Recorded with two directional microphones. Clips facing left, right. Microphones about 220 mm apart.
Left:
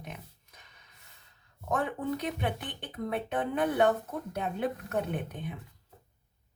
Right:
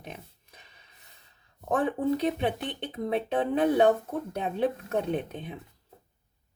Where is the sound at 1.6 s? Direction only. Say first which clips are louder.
Right 5 dB; 30° right (ahead or behind).